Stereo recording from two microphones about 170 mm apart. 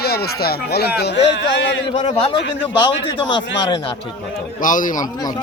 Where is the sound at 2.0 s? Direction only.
40° left (ahead or behind).